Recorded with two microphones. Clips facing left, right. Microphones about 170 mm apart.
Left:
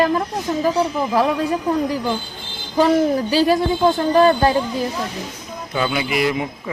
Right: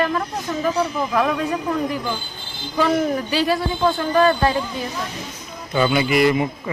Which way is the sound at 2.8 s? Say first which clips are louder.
Left 4 dB; 40° left (ahead or behind).